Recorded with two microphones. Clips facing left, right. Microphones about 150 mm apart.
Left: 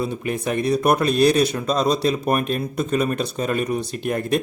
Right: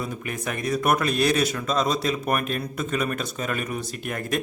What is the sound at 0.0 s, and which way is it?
Speech, 30° left (ahead or behind).